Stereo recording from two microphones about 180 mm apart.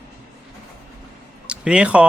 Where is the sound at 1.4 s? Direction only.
5° right (ahead or behind).